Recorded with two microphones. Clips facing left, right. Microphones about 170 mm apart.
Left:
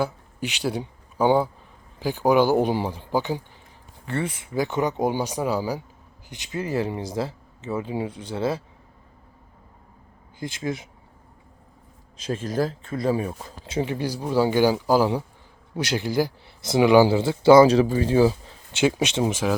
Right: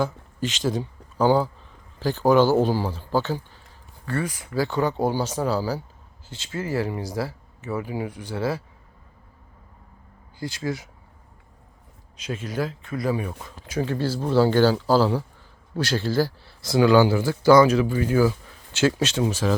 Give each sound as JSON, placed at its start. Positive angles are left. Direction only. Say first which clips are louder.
{"t": 0.0, "sound": "speech", "louder": "right 1 dB", "side_deg": 15}
{"t": 4.0, "sound": "speech", "louder": "even", "side_deg": 25}
{"t": 10.4, "sound": "speech", "louder": "even", "side_deg": 20}
{"t": 12.2, "sound": "speech", "louder": "left 3 dB", "side_deg": 35}